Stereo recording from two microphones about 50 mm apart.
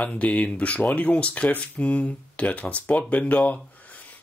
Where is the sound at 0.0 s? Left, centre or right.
Left.